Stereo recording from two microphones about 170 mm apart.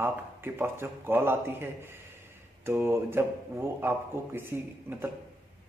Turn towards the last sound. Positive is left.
turn(degrees=-15)  # may be behind; listen again after turning